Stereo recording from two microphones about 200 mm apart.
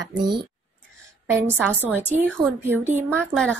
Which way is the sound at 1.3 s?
10° right (ahead or behind).